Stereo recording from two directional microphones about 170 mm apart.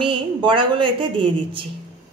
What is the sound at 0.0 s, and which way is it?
A woman's voice, 30° right (ahead or behind).